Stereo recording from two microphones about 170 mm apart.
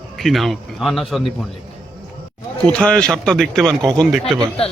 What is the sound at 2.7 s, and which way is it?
A man's voice, 5° left (ahead or behind).